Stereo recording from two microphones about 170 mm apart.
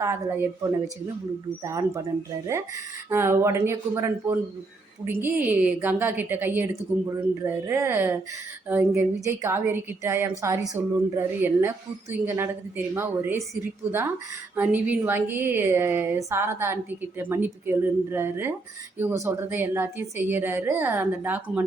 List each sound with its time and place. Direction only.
0.0 s a woman's voice: 15° right (ahead or behind)
14.5 s a woman's voice: 10° right (ahead or behind)